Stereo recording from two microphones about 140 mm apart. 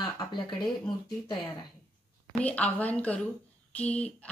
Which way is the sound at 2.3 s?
10° left (ahead or behind).